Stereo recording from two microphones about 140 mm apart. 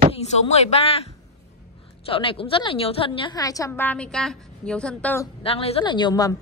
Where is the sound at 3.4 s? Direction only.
25° left (ahead or behind); by 5.1 s 5° left (ahead or behind).